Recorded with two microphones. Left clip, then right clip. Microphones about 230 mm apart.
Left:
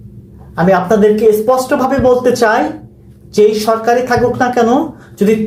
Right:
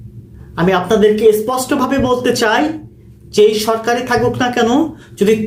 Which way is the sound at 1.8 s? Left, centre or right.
Right.